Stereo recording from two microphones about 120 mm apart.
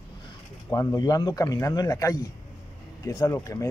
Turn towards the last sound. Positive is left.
turn(degrees=30)  # may be behind; listen again after turning